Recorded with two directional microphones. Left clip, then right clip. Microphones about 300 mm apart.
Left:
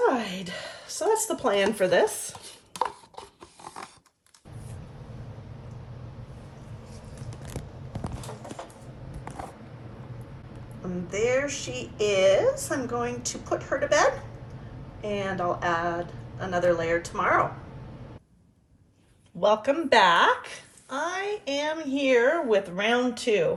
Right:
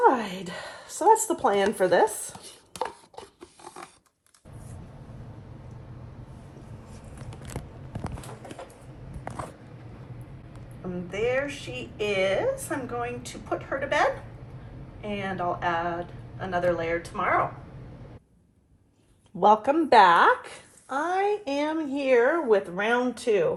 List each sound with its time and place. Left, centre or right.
0.1 s a sound: centre
1.4 s chopping: centre
10.8 s a woman's voice: centre
19.4 s speech: centre
21.8 s a woman's voice: centre